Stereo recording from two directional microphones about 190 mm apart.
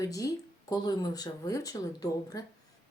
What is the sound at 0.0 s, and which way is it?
Speech, 20° left (ahead or behind).